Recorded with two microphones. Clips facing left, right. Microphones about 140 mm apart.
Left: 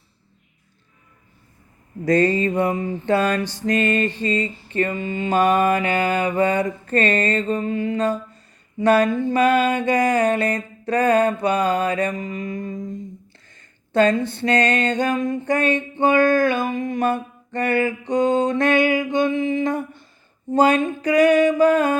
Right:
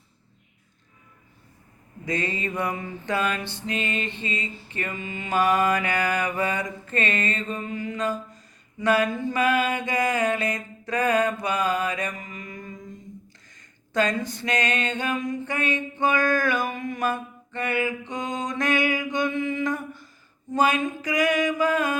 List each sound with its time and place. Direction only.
2.0 s mantra: 40° left (ahead or behind)
12.3 s mantra: 40° left (ahead or behind)
13.9 s mantra: 30° left (ahead or behind)
15.3 s a sound: 35° left (ahead or behind)
20.5 s mantra: 30° left (ahead or behind)